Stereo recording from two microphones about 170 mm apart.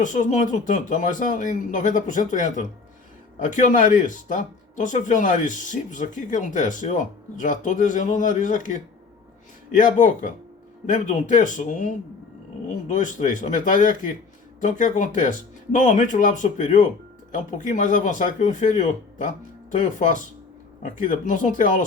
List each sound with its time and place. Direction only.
0.0 s speech: 45° left (ahead or behind)